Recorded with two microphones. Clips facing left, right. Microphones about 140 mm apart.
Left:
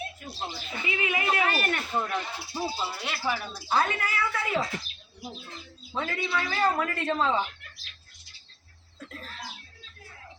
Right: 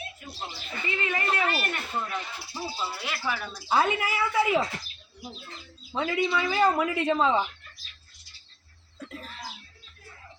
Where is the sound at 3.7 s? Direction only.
15° right (ahead or behind).